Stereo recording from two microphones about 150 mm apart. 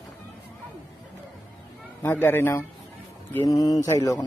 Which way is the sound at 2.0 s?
15° left (ahead or behind).